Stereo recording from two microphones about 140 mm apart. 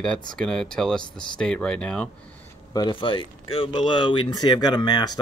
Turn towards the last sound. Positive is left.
turn(degrees=30)  # may be behind; listen again after turning